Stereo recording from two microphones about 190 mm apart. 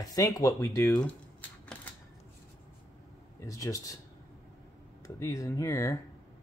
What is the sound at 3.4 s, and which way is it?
Speech, 15° left (ahead or behind).